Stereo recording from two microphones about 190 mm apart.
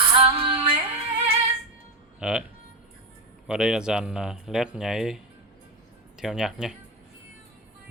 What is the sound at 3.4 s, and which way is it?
Speech, 5° right (ahead or behind).